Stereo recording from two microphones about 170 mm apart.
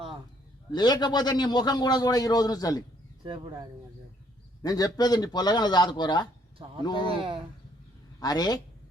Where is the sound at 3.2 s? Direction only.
30° right (ahead or behind).